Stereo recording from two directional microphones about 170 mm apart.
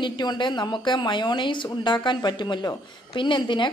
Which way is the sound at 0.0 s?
25° left (ahead or behind).